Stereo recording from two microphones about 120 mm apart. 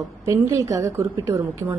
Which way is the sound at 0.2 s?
25° right (ahead or behind).